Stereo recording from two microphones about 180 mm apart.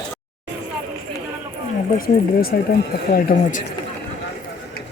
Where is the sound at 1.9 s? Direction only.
55° left (ahead or behind).